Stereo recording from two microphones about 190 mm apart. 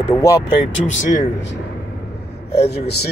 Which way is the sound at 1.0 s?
40° left (ahead or behind).